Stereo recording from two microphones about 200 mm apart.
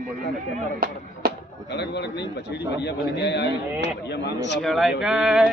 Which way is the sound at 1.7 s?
55° left (ahead or behind).